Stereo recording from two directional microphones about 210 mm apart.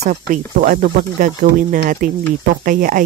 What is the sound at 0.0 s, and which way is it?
Speech, 40° right (ahead or behind).